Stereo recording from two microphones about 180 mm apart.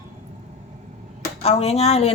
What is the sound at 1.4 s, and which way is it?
Speech, 35° left (ahead or behind).